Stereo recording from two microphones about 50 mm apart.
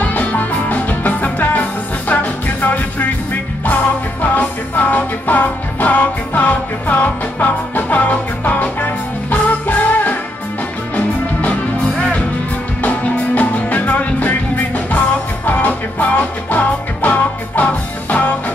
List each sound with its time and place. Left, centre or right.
0.0 s music: left
4.2 s music: left
12.8 s music: left
15.4 s music: left